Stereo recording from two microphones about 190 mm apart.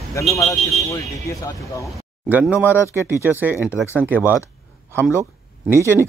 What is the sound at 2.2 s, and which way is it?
Speech, 10° right (ahead or behind).